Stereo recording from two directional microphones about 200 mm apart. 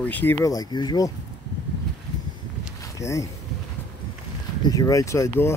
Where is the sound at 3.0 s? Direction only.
15° left (ahead or behind).